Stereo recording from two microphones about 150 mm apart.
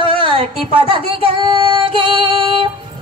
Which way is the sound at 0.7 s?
35° left (ahead or behind).